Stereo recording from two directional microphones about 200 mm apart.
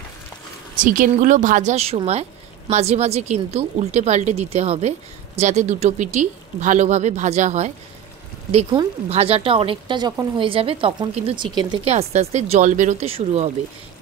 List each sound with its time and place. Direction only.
0.7 s a woman's voice: 40° right (ahead or behind)